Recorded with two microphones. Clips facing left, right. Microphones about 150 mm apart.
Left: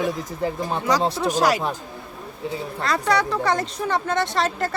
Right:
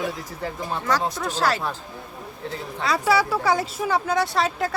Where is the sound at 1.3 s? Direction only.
15° left (ahead or behind).